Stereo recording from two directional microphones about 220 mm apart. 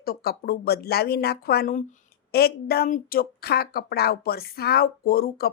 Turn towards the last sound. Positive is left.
turn(degrees=45)  # may be behind; listen again after turning